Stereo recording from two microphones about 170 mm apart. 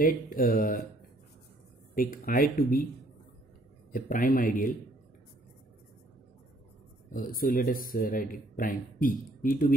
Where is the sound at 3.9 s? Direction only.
55° left (ahead or behind).